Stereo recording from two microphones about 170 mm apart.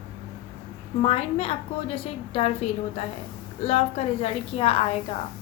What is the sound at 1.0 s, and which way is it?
A woman's voice, 35° left (ahead or behind).